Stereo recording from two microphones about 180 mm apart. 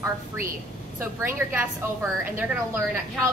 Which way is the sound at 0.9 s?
10° right (ahead or behind).